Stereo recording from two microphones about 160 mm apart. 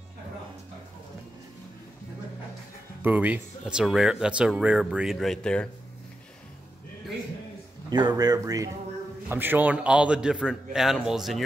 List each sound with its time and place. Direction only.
3.0 s speech: 10° right (ahead or behind)
7.9 s speech: 25° right (ahead or behind)
9.3 s speech: 10° right (ahead or behind)